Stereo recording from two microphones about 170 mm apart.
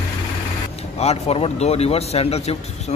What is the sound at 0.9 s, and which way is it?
Speech, 40° left (ahead or behind).